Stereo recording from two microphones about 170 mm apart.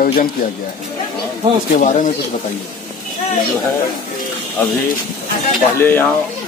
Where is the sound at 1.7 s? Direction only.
50° left (ahead or behind).